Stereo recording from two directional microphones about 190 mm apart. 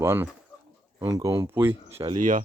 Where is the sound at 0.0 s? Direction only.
15° right (ahead or behind).